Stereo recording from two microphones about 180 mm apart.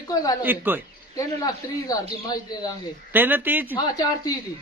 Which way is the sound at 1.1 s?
20° left (ahead or behind).